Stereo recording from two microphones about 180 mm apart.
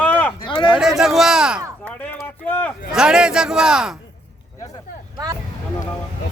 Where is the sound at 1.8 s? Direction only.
10° left (ahead or behind).